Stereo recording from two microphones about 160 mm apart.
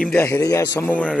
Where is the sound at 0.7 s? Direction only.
10° left (ahead or behind).